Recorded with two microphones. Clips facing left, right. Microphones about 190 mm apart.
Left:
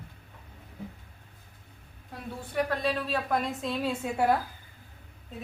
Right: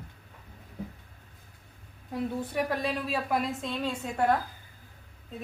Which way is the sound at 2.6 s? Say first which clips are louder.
Left 1 dB; 5° right (ahead or behind).